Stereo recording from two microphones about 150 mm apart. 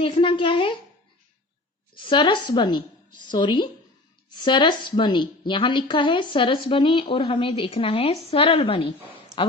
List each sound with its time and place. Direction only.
0.0 s a woman's voice: 35° left (ahead or behind)
2.0 s a woman's voice: 35° left (ahead or behind)